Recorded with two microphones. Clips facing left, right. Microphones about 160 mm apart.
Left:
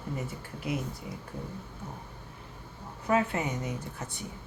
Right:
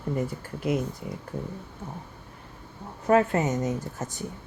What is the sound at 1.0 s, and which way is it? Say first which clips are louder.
Speech: right 5 dB; 55° right (ahead or behind).